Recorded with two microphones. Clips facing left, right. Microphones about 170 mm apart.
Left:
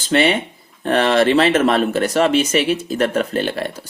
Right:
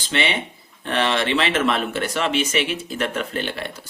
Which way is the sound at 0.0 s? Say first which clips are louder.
Left 8 dB; 45° left (ahead or behind).